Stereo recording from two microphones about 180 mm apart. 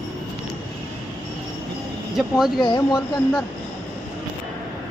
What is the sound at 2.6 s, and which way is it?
Speech, 25° left (ahead or behind).